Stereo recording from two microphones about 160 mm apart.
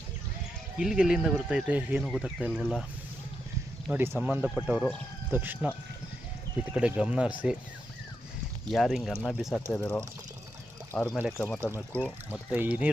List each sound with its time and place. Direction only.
0.8 s speech: 5° right (ahead or behind)
3.9 s speech: 15° right (ahead or behind)
5.3 s speech: 10° right (ahead or behind)
6.7 s speech: 5° right (ahead or behind)
8.7 s speech: centre (ahead or behind)
9.8 s speech: 15° left (ahead or behind)
10.9 s speech: 5° left (ahead or behind)
12.5 s speech: 10° right (ahead or behind)